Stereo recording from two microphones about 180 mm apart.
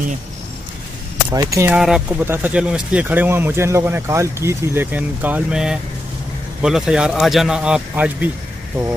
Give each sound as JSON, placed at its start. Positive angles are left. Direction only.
{"t": 1.3, "sound": "speech", "side_deg": -15}
{"t": 1.8, "sound": "speech", "side_deg": -5}